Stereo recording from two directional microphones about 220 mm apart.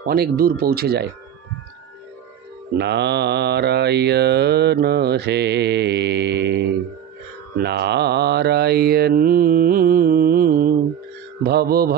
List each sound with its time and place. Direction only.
0.0 s mantra: 45° right (ahead or behind)
2.8 s mantra: 50° right (ahead or behind)